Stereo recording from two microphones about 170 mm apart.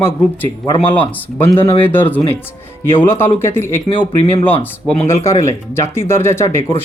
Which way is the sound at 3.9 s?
65° right (ahead or behind).